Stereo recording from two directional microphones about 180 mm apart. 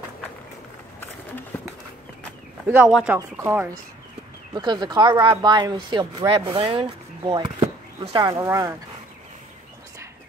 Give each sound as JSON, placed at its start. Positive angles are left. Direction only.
{"t": 2.7, "sound": "speech", "side_deg": -5}
{"t": 8.2, "sound": "speech", "side_deg": -20}